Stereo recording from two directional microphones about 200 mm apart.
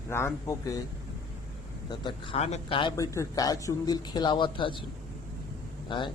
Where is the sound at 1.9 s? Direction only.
25° left (ahead or behind).